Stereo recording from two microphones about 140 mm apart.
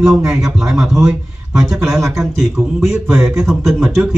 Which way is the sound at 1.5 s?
25° right (ahead or behind).